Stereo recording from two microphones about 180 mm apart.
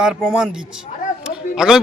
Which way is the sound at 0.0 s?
5° right (ahead or behind).